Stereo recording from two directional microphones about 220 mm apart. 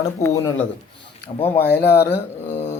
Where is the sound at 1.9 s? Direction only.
45° left (ahead or behind).